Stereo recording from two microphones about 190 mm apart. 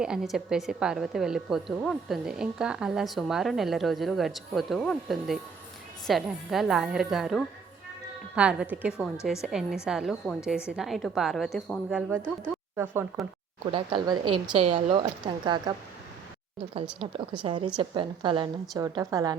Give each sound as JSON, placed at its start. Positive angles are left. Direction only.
{"t": 0.0, "sound": "a woman's voice", "side_deg": -5}
{"t": 13.7, "sound": "speech", "side_deg": -25}
{"t": 17.0, "sound": "a woman's voice", "side_deg": -30}